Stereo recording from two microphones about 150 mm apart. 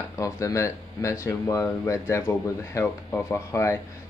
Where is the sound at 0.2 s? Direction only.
20° left (ahead or behind).